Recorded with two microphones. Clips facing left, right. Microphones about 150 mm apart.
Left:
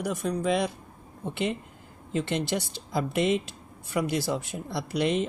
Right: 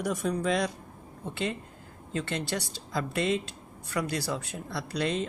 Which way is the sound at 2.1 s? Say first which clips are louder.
Left 4 dB; 20° left (ahead or behind).